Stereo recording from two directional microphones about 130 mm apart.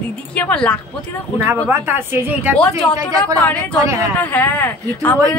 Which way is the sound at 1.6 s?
15° right (ahead or behind).